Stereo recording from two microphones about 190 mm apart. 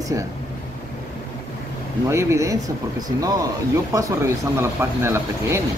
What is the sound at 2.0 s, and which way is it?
Speech, 15° right (ahead or behind).